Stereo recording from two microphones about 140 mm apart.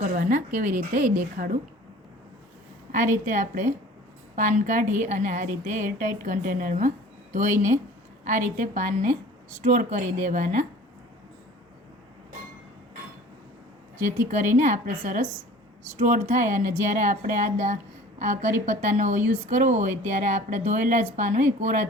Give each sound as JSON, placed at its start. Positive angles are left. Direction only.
{"t": 0.0, "sound": "speech", "side_deg": -65}
{"t": 2.9, "sound": "speech", "side_deg": -65}
{"t": 8.2, "sound": "speech", "side_deg": -65}
{"t": 14.3, "sound": "speech", "side_deg": -60}